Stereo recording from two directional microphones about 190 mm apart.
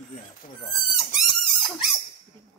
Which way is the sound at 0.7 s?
Centre (ahead or behind).